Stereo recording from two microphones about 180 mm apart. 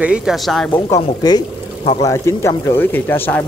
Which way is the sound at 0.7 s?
20° left (ahead or behind).